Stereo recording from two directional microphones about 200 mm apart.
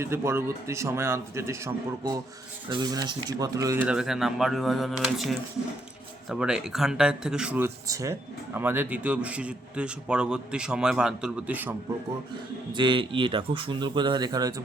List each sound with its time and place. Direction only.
0.0 s a man's voice: 15° right (ahead or behind)
12.7 s a man's voice: 25° right (ahead or behind)